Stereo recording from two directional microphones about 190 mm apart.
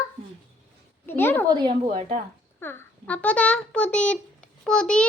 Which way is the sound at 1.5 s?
25° right (ahead or behind).